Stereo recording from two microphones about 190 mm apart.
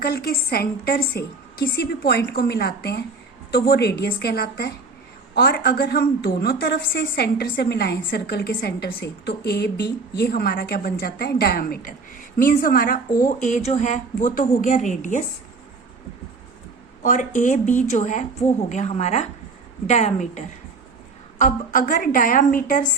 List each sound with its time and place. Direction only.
0.0 s a woman's voice: 55° left (ahead or behind)
17.0 s a woman's voice: 45° left (ahead or behind)